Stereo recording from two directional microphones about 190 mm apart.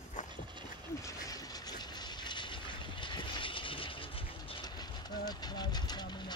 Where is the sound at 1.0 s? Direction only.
20° left (ahead or behind).